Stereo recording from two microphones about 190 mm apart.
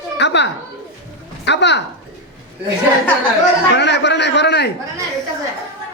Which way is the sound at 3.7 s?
65° left (ahead or behind).